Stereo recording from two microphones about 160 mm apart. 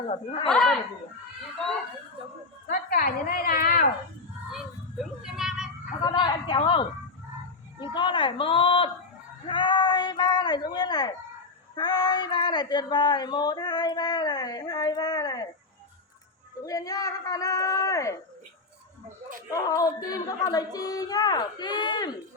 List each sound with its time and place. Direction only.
0.1 s speech: 35° left (ahead or behind)
0.4 s speech: 5° left (ahead or behind)
2.6 s a sound: 75° left (ahead or behind)
4.5 s vehicle: 5° right (ahead or behind)
6.0 s speech: 25° left (ahead or behind)
16.6 s speech: 20° left (ahead or behind)
19.5 s speech: 20° left (ahead or behind)